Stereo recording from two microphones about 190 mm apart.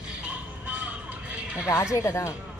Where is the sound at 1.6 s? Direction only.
15° left (ahead or behind).